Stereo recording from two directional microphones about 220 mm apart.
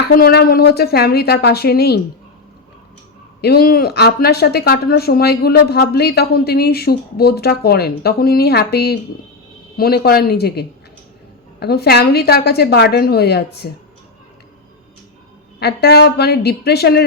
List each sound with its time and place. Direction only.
0.1 s speech: 45° left (ahead or behind)
3.4 s speech: 45° left (ahead or behind)
15.6 s speech: 50° left (ahead or behind)